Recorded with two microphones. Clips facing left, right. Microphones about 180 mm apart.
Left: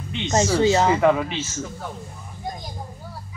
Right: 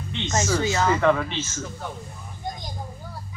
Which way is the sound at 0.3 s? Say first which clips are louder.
Left 6 dB; 30° left (ahead or behind).